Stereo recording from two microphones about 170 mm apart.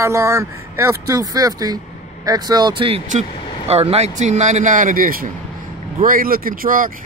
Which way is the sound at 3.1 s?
40° right (ahead or behind).